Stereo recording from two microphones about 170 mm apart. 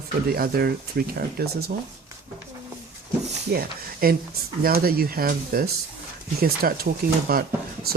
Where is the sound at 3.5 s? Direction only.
65° right (ahead or behind).